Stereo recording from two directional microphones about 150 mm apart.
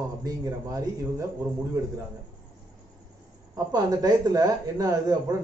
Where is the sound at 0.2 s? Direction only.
25° right (ahead or behind).